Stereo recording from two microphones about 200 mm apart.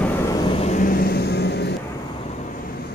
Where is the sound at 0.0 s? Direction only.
20° left (ahead or behind); by 1.7 s 55° left (ahead or behind).